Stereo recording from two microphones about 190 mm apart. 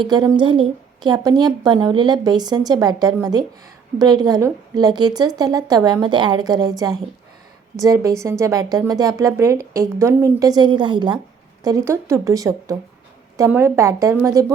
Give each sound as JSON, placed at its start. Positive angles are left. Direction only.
{"t": 0.0, "sound": "speech", "side_deg": -20}